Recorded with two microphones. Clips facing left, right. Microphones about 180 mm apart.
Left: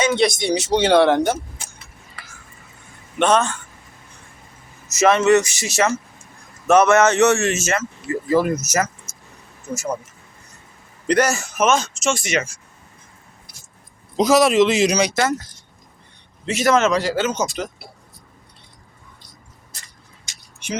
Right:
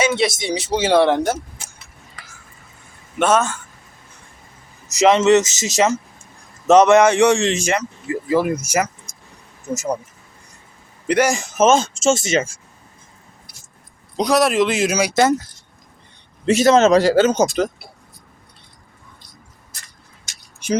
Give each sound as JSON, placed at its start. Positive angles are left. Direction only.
{"t": 0.2, "sound": "speech", "side_deg": 0}
{"t": 3.2, "sound": "speech", "side_deg": -5}
{"t": 4.9, "sound": "speech", "side_deg": -15}
{"t": 11.1, "sound": "speech", "side_deg": -10}
{"t": 11.5, "sound": "speech", "side_deg": -25}
{"t": 14.2, "sound": "speech", "side_deg": 0}
{"t": 15.1, "sound": "speech", "side_deg": -20}
{"t": 16.6, "sound": "speech", "side_deg": -30}